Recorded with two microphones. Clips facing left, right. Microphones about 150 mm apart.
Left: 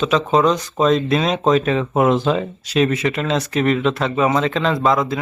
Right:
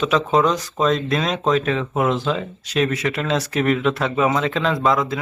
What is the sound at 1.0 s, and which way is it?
Speech, 10° left (ahead or behind).